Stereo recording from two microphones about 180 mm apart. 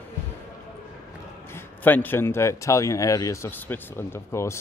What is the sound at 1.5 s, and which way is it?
A man's voice, 10° left (ahead or behind).